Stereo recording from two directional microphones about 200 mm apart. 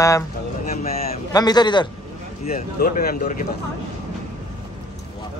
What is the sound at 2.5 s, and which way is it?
Speech, 45° left (ahead or behind).